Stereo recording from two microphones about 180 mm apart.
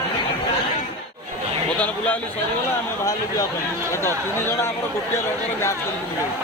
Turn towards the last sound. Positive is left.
turn(degrees=15)  # may be behind; listen again after turning